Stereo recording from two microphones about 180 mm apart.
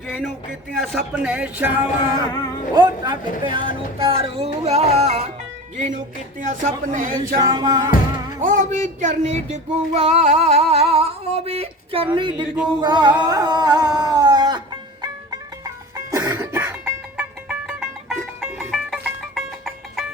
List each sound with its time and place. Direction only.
0.8 s speech: centre (ahead or behind)
2.7 s child singing: 20° right (ahead or behind); by 6.0 s 40° right (ahead or behind)
6.4 s speech: 45° right (ahead or behind)
7.3 s music: 25° right (ahead or behind)
8.4 s child singing: 45° right (ahead or behind)
12.1 s music: 25° right (ahead or behind)
12.8 s a sound: 25° right (ahead or behind)
15.0 s music: 20° right (ahead or behind); by 20.1 s centre (ahead or behind)